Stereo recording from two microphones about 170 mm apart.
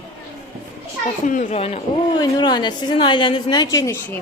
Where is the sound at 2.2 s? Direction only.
25° left (ahead or behind).